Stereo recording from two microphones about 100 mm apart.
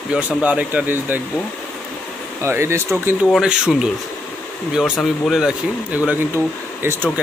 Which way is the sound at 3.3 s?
5° right (ahead or behind).